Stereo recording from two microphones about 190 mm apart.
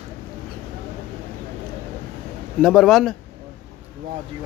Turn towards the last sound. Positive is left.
turn(degrees=0)  # may be behind; listen again after turning